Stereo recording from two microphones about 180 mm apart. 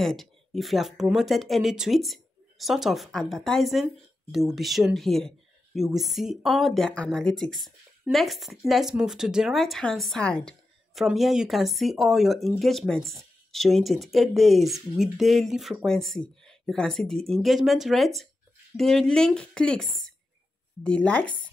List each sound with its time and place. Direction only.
0.0 s speech: centre (ahead or behind)